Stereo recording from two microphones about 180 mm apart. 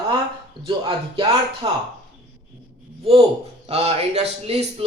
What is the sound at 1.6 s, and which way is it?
Speech, 30° right (ahead or behind).